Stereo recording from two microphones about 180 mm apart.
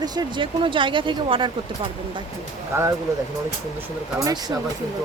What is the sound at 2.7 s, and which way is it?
Speech, 15° right (ahead or behind).